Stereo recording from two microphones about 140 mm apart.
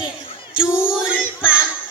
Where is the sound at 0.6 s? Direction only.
5° right (ahead or behind).